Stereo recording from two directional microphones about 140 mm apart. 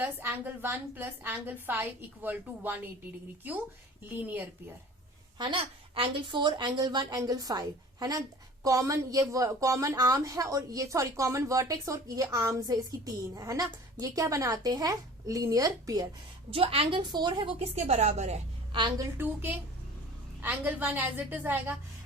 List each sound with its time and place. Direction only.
0.0 s a woman's voice: 15° right (ahead or behind)
4.1 s a woman's voice: 15° right (ahead or behind)
5.4 s a woman's voice: 35° right (ahead or behind)
16.5 s a woman's voice: 40° right (ahead or behind)
17.6 s a woman's voice: 50° right (ahead or behind)
18.7 s a woman's voice: 35° right (ahead or behind)
19.1 s a woman's voice: 15° right (ahead or behind)